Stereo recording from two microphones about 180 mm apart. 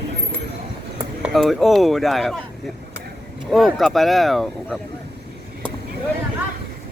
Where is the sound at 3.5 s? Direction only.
Centre (ahead or behind).